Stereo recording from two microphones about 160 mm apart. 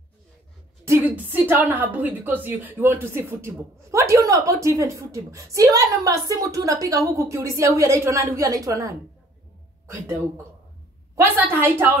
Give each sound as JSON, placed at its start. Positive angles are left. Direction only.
{"t": 0.8, "sound": "a woman's voice", "side_deg": -10}